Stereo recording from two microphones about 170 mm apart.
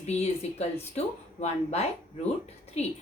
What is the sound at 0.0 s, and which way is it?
Speech, 40° left (ahead or behind).